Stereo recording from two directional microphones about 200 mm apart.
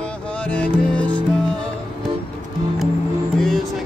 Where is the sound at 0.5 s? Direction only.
5° left (ahead or behind).